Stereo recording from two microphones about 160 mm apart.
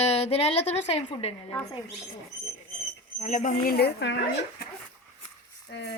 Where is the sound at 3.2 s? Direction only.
50° left (ahead or behind); by 4.2 s 90° left.